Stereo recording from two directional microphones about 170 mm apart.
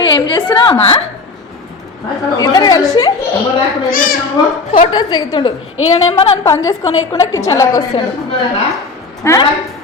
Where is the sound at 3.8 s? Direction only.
55° left (ahead or behind).